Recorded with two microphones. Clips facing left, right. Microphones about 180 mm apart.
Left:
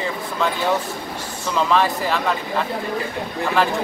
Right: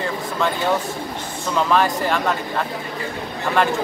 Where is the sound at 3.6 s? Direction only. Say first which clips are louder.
Right 1 dB; centre (ahead or behind).